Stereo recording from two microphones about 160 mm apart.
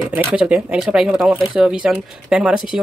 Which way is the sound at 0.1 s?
10° right (ahead or behind).